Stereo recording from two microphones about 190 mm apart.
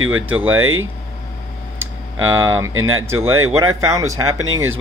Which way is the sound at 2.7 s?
90° right.